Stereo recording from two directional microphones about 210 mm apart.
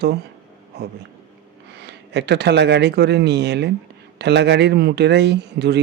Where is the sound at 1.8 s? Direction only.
55° right (ahead or behind).